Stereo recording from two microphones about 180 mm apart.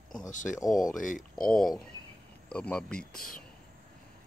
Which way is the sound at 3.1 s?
50° left (ahead or behind).